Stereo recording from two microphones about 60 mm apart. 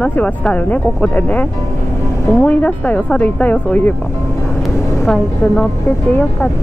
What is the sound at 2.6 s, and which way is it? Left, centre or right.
Speech, left.